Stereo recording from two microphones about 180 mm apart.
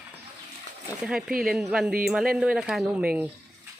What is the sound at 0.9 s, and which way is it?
Speech, 5° right (ahead or behind).